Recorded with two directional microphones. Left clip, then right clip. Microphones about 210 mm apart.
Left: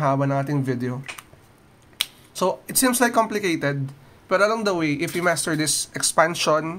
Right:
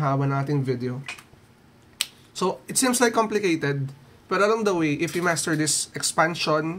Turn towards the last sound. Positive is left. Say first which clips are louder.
# left 2 dB
turn(degrees=25)  # may be behind; listen again after turning